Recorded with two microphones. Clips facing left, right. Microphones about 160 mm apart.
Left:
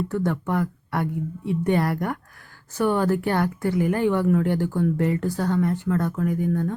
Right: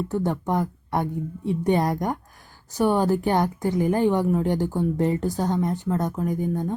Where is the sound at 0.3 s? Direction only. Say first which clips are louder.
Even; 20° right (ahead or behind).